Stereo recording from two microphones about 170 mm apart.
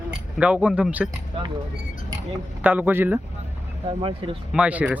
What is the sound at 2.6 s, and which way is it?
Speech, 10° right (ahead or behind).